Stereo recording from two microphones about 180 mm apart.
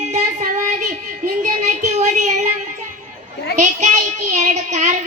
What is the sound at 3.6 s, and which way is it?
Child singing, 40° right (ahead or behind).